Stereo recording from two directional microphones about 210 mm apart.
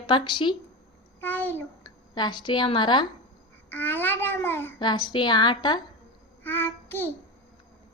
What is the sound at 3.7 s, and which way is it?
A child's voice, 10° left (ahead or behind).